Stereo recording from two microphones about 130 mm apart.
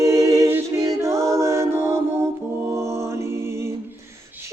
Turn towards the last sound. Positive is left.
turn(degrees=-20)  # may be behind; listen again after turning